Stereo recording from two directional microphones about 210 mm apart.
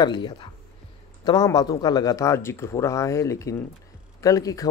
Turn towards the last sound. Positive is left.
turn(degrees=15)  # may be behind; listen again after turning